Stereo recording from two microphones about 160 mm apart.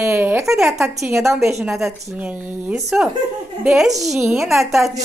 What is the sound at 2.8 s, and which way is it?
Speech, centre (ahead or behind).